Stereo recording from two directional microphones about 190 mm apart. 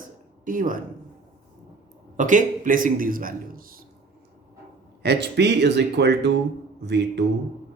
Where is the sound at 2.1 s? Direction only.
40° right (ahead or behind).